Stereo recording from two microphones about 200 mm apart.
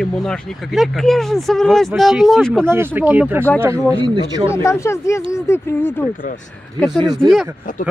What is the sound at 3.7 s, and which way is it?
Speech, 20° right (ahead or behind).